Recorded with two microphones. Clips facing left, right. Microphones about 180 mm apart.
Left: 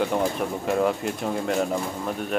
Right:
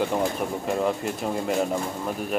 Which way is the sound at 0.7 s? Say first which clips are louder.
Left 3 dB; centre (ahead or behind).